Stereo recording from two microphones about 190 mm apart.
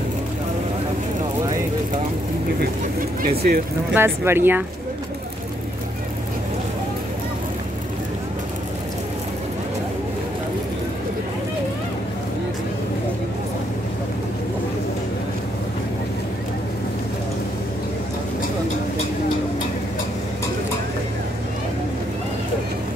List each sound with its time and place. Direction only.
3.2 s speech: 50° right (ahead or behind)
3.9 s speech: 10° right (ahead or behind)